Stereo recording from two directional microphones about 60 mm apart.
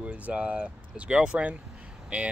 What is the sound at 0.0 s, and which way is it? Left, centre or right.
Speech, right.